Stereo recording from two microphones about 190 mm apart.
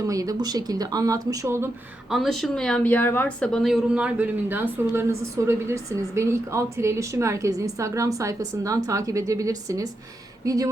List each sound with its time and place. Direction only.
0.0 s speech: 20° right (ahead or behind)
2.0 s speech: centre (ahead or behind); by 10.7 s 20° right (ahead or behind)